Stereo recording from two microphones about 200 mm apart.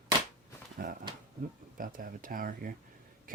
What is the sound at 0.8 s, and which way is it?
Speech, 45° right (ahead or behind).